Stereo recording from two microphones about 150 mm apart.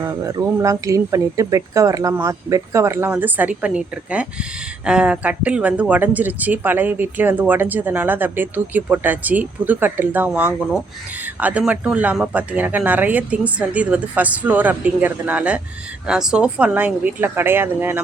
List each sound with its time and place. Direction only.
0.0 s speech: 20° right (ahead or behind)